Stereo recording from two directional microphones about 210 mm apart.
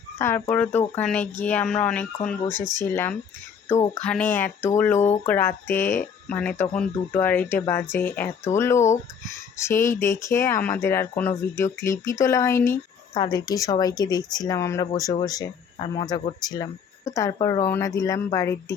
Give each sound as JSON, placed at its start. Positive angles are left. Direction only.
{"t": 0.2, "sound": "speech", "side_deg": 10}